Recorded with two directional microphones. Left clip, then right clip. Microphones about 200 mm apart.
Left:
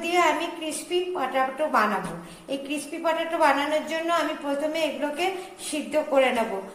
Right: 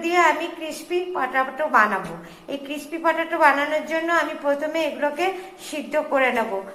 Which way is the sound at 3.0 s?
10° right (ahead or behind).